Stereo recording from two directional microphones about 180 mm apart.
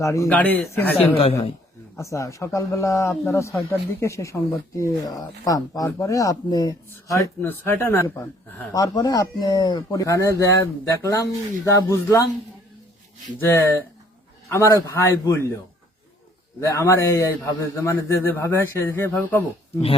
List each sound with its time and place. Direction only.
0.0 s a man's voice: 15° left (ahead or behind)
0.9 s a woman's voice: 35° left (ahead or behind)
2.0 s a man's voice: 15° left (ahead or behind)
13.4 s a man's voice: 15° left (ahead or behind)